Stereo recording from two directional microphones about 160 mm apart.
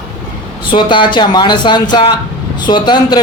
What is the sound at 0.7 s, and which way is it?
Speech, 30° left (ahead or behind).